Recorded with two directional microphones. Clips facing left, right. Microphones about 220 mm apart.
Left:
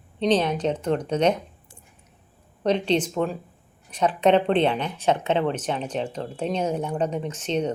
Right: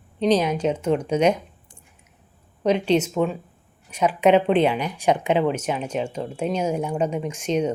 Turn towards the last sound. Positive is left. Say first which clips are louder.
# right 3 dB
turn(degrees=-10)  # may be behind; listen again after turning